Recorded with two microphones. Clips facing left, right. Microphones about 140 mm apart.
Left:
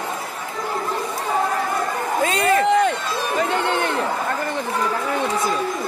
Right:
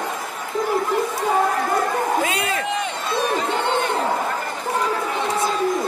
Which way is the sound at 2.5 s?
60° left (ahead or behind).